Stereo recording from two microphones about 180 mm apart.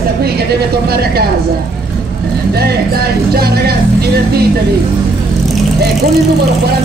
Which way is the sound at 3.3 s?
60° right (ahead or behind).